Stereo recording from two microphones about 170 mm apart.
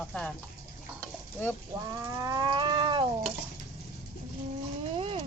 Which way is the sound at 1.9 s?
20° right (ahead or behind).